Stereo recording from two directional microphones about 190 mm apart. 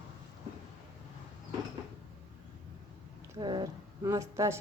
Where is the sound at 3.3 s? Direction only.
25° right (ahead or behind).